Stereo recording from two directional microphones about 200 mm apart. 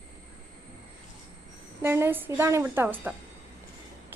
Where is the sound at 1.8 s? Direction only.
10° right (ahead or behind).